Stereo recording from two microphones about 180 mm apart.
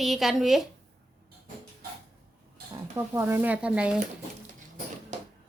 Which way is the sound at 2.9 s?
10° right (ahead or behind).